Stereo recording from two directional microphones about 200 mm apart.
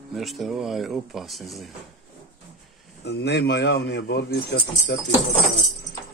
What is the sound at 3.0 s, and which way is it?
Speech, 55° left (ahead or behind).